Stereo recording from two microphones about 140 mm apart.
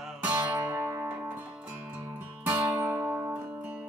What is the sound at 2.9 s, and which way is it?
Music, 15° right (ahead or behind).